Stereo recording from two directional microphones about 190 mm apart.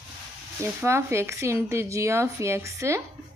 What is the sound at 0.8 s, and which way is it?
Speech, 15° right (ahead or behind).